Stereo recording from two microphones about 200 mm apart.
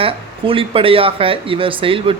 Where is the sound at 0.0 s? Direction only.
25° right (ahead or behind).